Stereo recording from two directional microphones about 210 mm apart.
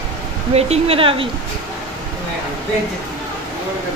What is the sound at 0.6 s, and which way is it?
Speech, 30° right (ahead or behind).